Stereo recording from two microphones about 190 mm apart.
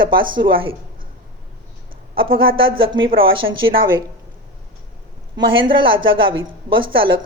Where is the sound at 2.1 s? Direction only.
25° right (ahead or behind).